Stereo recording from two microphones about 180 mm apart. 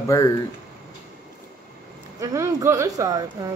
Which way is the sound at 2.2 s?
20° right (ahead or behind).